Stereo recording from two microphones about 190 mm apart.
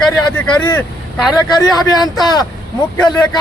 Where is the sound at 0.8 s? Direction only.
Centre (ahead or behind).